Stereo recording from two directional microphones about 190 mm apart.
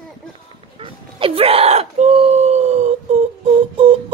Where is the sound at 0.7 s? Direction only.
30° right (ahead or behind).